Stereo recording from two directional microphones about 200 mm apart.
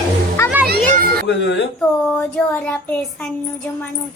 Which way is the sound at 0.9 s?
45° right (ahead or behind).